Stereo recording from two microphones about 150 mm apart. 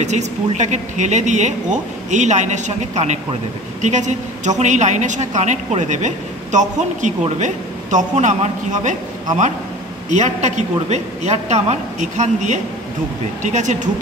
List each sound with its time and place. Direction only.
0.0 s a woman's voice: 50° right (ahead or behind)